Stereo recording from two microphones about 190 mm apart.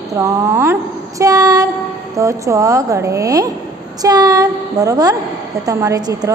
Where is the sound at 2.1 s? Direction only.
15° right (ahead or behind).